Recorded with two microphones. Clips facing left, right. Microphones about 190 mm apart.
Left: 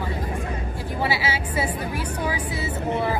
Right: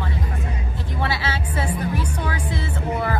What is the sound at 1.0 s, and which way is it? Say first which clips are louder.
Speech: left 1 dB; 10° left (ahead or behind).